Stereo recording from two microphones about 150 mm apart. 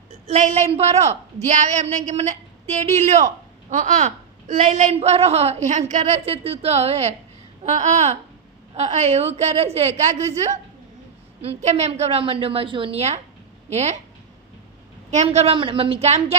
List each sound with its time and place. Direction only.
0.3 s a woman's voice: 55° right (ahead or behind)
4.9 s a woman's voice: 45° right (ahead or behind)
15.1 s a woman's voice: 50° right (ahead or behind)
15.5 s a woman's voice: 35° right (ahead or behind)